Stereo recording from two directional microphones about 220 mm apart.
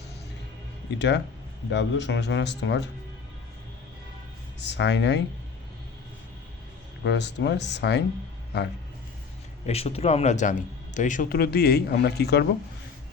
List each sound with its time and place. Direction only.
0.9 s speech: 50° left (ahead or behind)
4.8 s speech: 50° left (ahead or behind)
7.0 s speech: 50° left (ahead or behind)
9.6 s a man's voice: 30° left (ahead or behind); by 12.5 s 45° left (ahead or behind)